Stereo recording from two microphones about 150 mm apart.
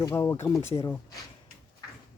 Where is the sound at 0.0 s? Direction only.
20° left (ahead or behind).